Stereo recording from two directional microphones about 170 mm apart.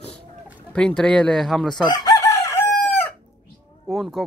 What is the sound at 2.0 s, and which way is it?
Chicken, 15° left (ahead or behind).